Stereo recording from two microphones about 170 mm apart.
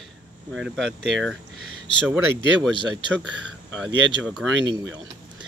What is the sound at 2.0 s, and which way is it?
Speech, 15° right (ahead or behind).